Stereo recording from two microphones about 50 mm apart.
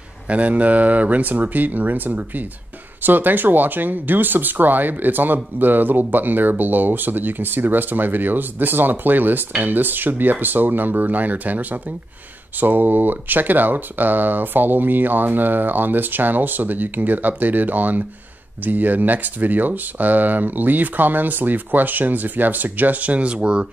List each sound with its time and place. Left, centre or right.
0.3 s speech: right